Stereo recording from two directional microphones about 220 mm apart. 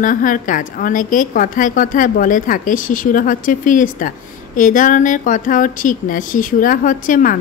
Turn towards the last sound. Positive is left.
turn(degrees=35)  # may be behind; listen again after turning